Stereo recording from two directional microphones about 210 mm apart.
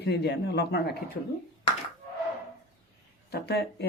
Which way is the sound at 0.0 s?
50° left (ahead or behind).